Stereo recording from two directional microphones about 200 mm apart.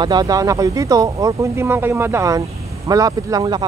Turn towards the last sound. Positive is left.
turn(degrees=-20)  # may be behind; listen again after turning